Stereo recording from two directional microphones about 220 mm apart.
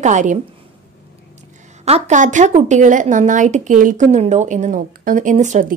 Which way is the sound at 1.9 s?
30° right (ahead or behind).